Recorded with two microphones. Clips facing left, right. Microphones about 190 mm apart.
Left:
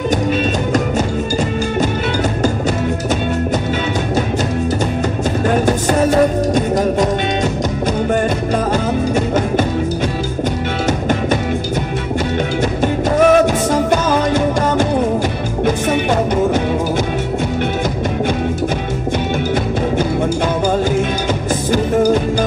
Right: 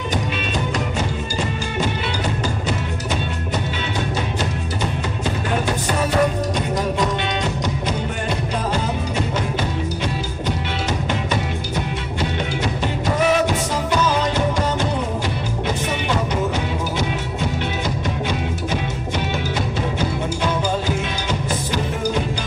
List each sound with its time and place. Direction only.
5.7 s music: 45° left (ahead or behind)
12.8 s music: 50° left (ahead or behind)